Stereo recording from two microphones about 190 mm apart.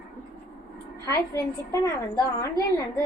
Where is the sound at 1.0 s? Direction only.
15° left (ahead or behind).